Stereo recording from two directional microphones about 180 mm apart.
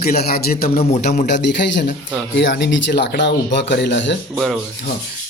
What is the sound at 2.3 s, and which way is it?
Speech, 90° left.